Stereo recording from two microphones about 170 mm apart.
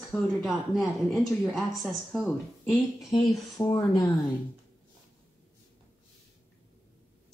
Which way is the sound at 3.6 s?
15° left (ahead or behind).